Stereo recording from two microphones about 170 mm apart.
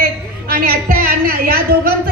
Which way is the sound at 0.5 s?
60° right (ahead or behind).